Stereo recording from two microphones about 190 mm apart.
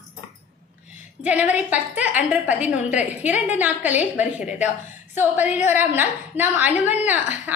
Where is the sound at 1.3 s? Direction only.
10° right (ahead or behind).